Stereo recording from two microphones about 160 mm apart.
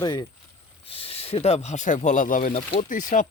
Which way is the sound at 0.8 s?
35° left (ahead or behind).